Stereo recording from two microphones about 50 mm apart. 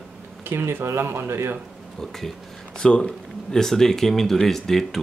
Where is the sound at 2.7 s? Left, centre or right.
Centre.